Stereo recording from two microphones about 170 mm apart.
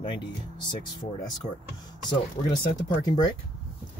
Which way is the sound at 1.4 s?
45° left (ahead or behind).